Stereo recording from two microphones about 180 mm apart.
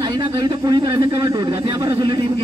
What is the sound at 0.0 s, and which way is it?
A man's voice, 20° right (ahead or behind).